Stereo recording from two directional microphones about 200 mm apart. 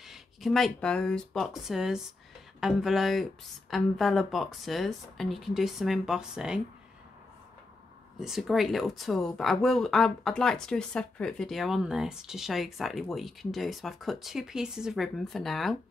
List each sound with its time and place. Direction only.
0.0 s speech: centre (ahead or behind)
8.2 s speech: centre (ahead or behind)